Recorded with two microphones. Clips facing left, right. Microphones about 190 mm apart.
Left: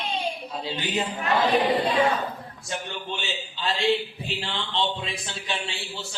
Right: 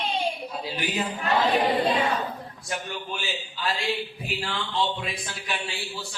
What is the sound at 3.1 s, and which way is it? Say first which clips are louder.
A man's voice: even; 25° left (ahead or behind).